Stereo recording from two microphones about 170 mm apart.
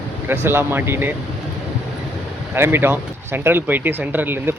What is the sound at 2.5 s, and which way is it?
Speech, 15° right (ahead or behind).